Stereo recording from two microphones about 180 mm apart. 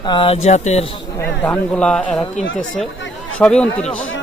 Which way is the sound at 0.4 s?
40° left (ahead or behind).